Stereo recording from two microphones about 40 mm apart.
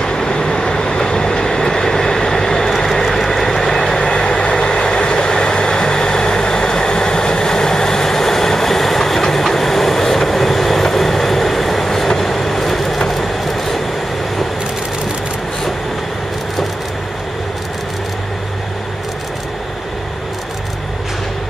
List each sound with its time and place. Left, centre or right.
0.0 s vehicle: centre